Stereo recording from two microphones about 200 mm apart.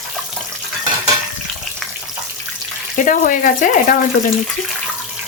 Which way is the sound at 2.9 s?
40° left (ahead or behind).